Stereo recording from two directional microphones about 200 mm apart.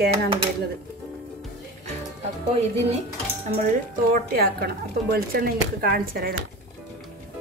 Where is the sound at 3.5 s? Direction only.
45° right (ahead or behind).